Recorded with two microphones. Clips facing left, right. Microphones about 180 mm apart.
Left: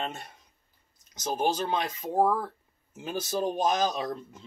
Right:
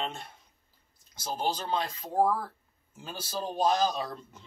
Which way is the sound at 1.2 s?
20° left (ahead or behind).